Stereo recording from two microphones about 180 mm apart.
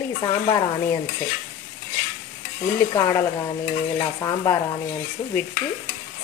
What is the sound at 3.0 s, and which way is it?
Speech, 20° left (ahead or behind).